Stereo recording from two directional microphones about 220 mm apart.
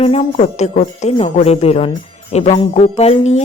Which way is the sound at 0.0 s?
30° left (ahead or behind).